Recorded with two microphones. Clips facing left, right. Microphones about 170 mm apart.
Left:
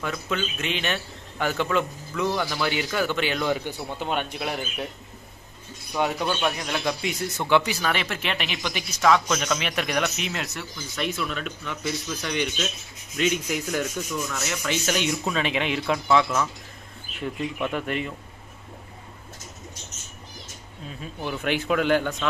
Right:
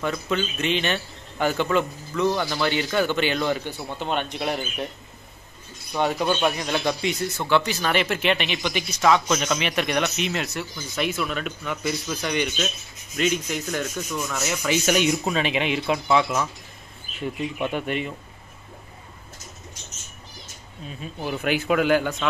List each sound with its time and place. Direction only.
0.0 s speech: centre (ahead or behind)
5.9 s speech: centre (ahead or behind)
7.3 s speech: 15° left (ahead or behind)
7.8 s speech: centre (ahead or behind)
17.6 s speech: 25° right (ahead or behind)
21.2 s speech: 5° right (ahead or behind)